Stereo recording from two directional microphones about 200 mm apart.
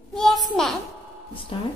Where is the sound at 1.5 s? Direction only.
30° left (ahead or behind).